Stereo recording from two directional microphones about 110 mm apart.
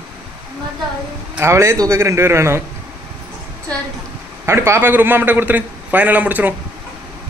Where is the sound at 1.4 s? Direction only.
25° right (ahead or behind).